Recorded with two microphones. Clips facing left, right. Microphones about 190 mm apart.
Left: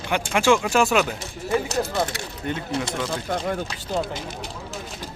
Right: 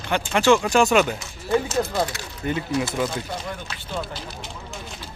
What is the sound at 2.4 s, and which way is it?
Speech, 5° right (ahead or behind).